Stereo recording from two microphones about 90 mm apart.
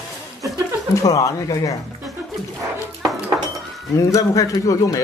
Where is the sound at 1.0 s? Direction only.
40° left (ahead or behind).